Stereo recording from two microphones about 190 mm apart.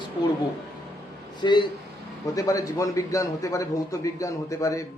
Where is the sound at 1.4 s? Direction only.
25° left (ahead or behind).